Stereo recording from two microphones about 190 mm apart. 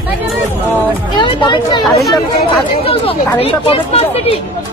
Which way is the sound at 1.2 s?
25° left (ahead or behind).